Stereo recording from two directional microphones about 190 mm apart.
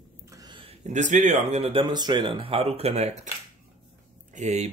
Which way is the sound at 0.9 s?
40° right (ahead or behind).